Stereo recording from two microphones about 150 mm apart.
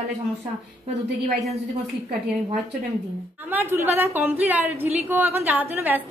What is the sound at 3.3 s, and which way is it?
A woman's voice, 15° right (ahead or behind).